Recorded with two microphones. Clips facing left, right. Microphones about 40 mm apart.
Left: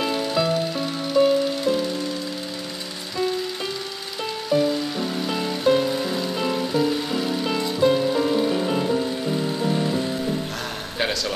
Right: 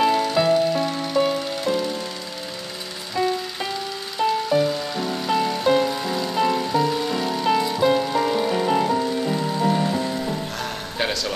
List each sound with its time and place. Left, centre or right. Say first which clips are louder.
0.0 s music: right 4 dB; centre
4.2 s music: right 2 dB; centre
11.0 s a sound: even; centre